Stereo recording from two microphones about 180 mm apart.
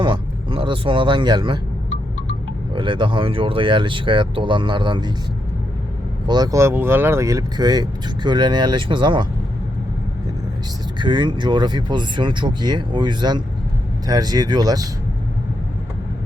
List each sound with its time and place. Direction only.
0.0 s speech: 30° right (ahead or behind)
2.7 s speech: 25° right (ahead or behind)
6.2 s speech: 25° right (ahead or behind)
11.0 s speech: 25° right (ahead or behind)